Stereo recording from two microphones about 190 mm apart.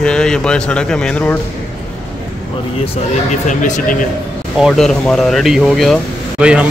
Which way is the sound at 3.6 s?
45° left (ahead or behind).